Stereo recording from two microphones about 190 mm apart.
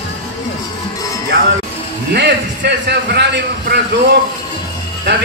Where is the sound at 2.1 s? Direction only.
60° right (ahead or behind).